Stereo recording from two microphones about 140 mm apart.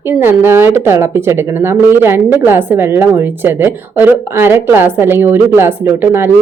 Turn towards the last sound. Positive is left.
turn(degrees=-15)  # may be behind; listen again after turning